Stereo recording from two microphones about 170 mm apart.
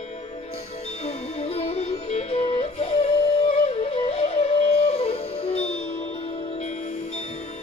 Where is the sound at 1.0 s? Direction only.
40° left (ahead or behind).